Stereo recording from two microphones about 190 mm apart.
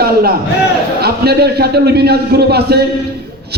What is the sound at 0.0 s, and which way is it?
A man's voice, 55° right (ahead or behind).